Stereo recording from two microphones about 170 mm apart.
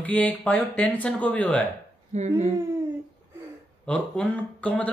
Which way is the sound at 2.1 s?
40° right (ahead or behind).